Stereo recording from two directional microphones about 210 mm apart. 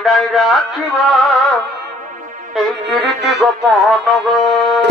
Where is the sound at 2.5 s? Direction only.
Centre (ahead or behind).